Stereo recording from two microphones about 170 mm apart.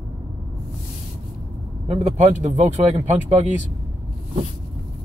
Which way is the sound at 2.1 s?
45° right (ahead or behind).